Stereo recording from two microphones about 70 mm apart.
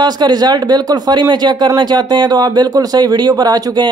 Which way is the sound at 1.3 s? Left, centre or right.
Right.